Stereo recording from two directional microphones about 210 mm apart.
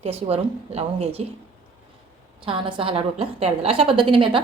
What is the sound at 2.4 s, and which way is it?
A woman's voice, 25° right (ahead or behind).